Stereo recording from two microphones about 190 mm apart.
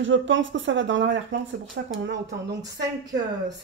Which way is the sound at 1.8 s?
65° right (ahead or behind).